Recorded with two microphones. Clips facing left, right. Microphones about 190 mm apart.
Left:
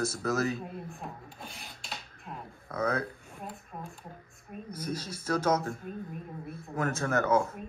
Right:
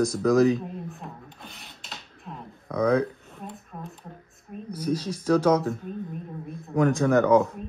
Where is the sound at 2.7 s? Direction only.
15° right (ahead or behind).